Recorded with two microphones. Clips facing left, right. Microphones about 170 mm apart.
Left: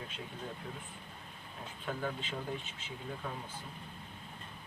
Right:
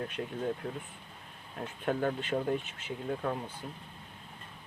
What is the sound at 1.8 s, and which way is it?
Speech, 55° right (ahead or behind).